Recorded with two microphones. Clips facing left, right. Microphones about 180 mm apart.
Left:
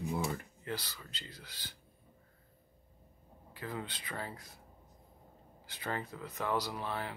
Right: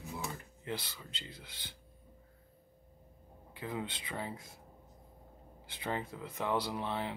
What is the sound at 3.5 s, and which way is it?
Speech, 20° right (ahead or behind).